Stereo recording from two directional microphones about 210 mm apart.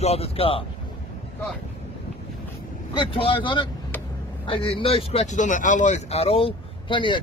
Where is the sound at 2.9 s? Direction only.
25° left (ahead or behind).